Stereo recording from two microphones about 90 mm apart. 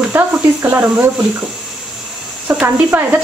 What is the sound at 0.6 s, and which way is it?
Speech, 20° right (ahead or behind).